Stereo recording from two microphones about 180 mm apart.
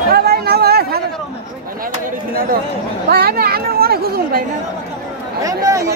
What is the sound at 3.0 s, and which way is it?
Speech, 55° right (ahead or behind).